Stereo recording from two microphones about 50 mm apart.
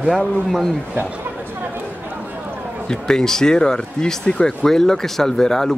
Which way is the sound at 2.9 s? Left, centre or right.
Centre.